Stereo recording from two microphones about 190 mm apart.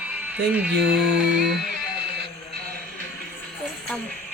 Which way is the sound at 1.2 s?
65° right (ahead or behind).